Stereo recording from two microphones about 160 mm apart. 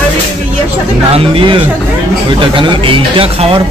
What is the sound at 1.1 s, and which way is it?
Speech, 35° right (ahead or behind).